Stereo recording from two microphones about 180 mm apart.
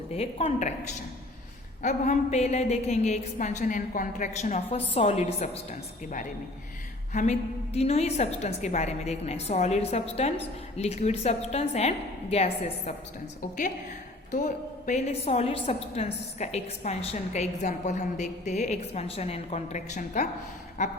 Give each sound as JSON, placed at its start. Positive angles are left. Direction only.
{"t": 0.1, "sound": "a woman's voice", "side_deg": 35}
{"t": 1.8, "sound": "a woman's voice", "side_deg": 40}
{"t": 7.1, "sound": "a woman's voice", "side_deg": 40}
{"t": 14.3, "sound": "a woman's voice", "side_deg": 45}